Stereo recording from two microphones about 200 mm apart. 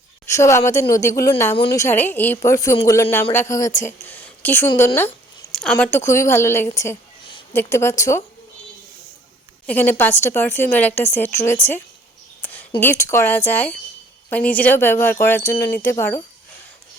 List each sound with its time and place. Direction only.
0.3 s a woman's voice: 15° left (ahead or behind)
1.5 s a woman's voice: 25° left (ahead or behind)
1.8 s a woman's voice: 10° left (ahead or behind)
4.0 s a sound: 10° left (ahead or behind)
4.9 s a woman's voice: 5° left (ahead or behind)
9.6 s a woman's voice: 10° left (ahead or behind)
12.4 s a sound: 10° left (ahead or behind)
12.8 s a woman's voice: 15° left (ahead or behind)